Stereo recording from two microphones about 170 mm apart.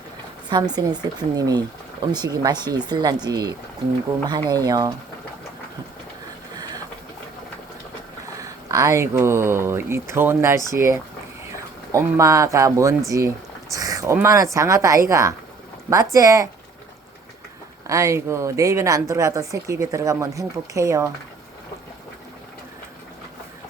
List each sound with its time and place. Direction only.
0.5 s speech: 25° right (ahead or behind)
8.4 s speech: 20° right (ahead or behind)
17.8 s speech: 20° right (ahead or behind)